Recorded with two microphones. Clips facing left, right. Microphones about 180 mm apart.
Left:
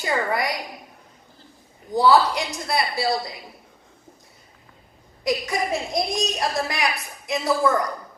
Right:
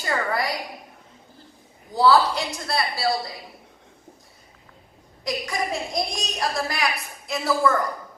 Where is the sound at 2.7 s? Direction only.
20° left (ahead or behind).